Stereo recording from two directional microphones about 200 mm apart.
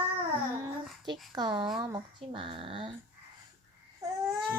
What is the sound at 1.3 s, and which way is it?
Speech, 20° right (ahead or behind).